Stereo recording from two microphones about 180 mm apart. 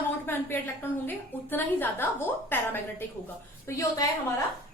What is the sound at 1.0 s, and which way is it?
A woman's voice, 10° left (ahead or behind).